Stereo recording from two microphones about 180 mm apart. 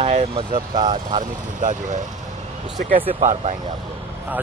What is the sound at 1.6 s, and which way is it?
Speech, 45° right (ahead or behind).